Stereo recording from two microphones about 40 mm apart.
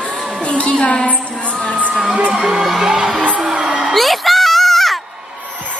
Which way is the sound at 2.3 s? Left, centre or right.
Centre.